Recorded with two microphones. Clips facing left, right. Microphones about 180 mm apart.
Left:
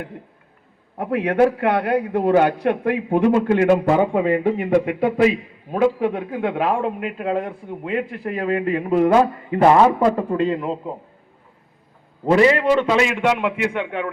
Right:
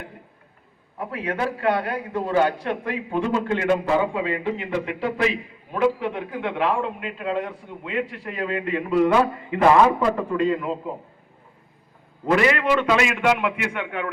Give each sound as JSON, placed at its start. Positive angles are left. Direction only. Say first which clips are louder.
{"t": 0.9, "sound": "a man's voice", "louder": "left 9 dB", "side_deg": 65}
{"t": 12.2, "sound": "a man's voice", "louder": "left 5 dB", "side_deg": 30}